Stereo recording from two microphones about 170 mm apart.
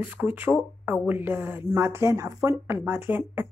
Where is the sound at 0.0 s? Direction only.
10° right (ahead or behind).